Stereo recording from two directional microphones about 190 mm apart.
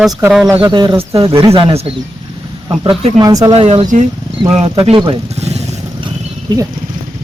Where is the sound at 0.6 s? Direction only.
20° right (ahead or behind).